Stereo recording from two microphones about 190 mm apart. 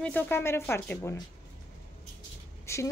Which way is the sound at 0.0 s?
10° left (ahead or behind).